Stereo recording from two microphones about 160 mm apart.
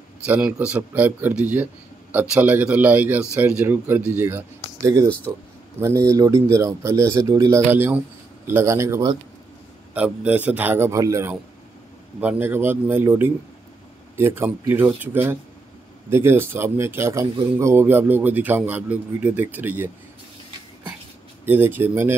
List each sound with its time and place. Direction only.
0.3 s a man's voice: 10° right (ahead or behind)
21.5 s a man's voice: 10° right (ahead or behind)